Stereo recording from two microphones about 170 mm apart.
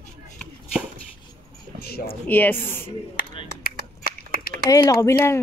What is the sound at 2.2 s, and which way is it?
Speech, 10° left (ahead or behind).